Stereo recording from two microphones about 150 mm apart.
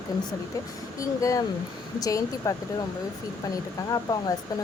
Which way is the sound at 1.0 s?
20° left (ahead or behind).